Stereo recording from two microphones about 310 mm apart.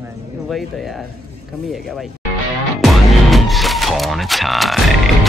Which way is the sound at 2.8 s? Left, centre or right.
Centre.